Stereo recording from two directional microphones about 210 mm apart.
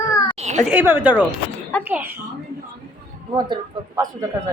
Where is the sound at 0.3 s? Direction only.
30° right (ahead or behind).